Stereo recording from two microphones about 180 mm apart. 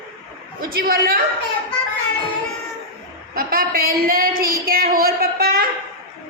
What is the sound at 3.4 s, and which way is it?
Speech, 55° right (ahead or behind).